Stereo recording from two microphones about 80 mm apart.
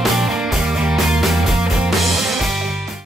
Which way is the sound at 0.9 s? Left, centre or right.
Centre.